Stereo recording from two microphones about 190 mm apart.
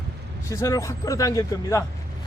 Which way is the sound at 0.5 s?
15° left (ahead or behind).